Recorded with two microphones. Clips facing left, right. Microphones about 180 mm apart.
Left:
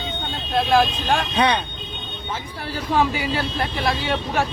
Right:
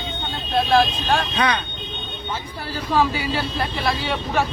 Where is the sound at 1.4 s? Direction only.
25° left (ahead or behind).